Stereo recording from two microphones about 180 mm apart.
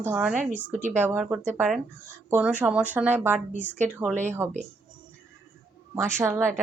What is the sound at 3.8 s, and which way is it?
Speech, 10° right (ahead or behind).